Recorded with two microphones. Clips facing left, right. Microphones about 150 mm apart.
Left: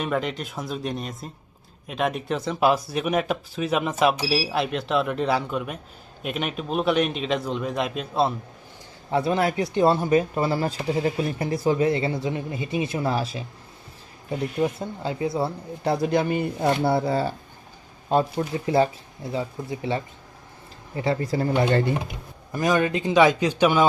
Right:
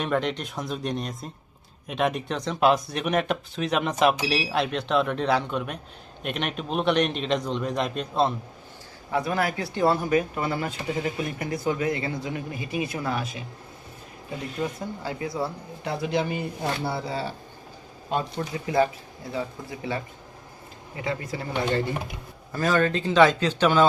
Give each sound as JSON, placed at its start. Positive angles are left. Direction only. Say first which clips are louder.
{"t": 0.0, "sound": "speech", "louder": "even", "side_deg": 0}
{"t": 9.0, "sound": "speech", "louder": "left 3 dB", "side_deg": 30}
{"t": 14.8, "sound": "speech", "louder": "left 4 dB", "side_deg": 25}
{"t": 18.1, "sound": "speech", "louder": "left 6 dB", "side_deg": 30}
{"t": 22.5, "sound": "a man's voice", "louder": "left 1 dB", "side_deg": 15}